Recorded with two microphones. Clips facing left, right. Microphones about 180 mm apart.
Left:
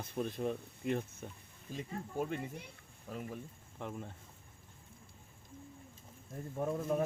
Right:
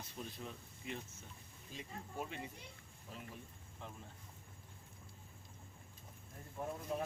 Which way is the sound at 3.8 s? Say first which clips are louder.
Left 9 dB; 65° left (ahead or behind).